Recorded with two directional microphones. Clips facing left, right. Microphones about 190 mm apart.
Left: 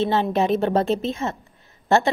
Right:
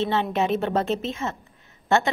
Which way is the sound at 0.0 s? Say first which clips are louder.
Left 3 dB; 35° left (ahead or behind).